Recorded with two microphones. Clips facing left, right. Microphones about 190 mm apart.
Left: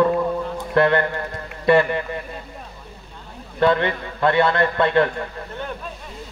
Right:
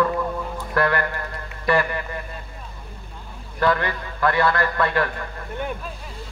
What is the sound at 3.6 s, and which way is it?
A man's voice, 25° left (ahead or behind).